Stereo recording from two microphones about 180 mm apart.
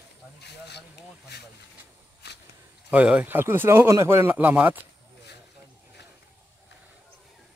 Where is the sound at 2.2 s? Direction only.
70° left (ahead or behind).